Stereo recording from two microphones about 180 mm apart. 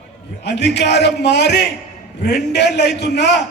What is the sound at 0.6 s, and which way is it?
Music, 70° left (ahead or behind).